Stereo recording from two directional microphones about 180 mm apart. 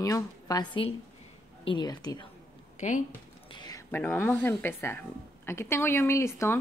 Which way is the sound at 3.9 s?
10° left (ahead or behind).